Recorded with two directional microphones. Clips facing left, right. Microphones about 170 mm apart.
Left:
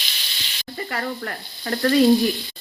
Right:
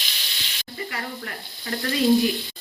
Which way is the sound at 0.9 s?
45° left (ahead or behind).